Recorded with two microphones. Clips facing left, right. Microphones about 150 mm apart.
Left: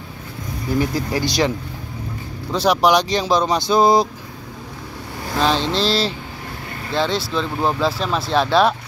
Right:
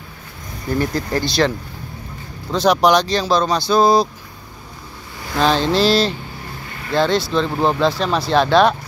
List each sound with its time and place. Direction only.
0.7 s speech: 10° left (ahead or behind)
2.5 s speech: 5° left (ahead or behind)
5.4 s speech: centre (ahead or behind)